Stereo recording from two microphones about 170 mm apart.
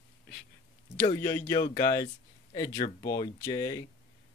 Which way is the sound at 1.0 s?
20° left (ahead or behind).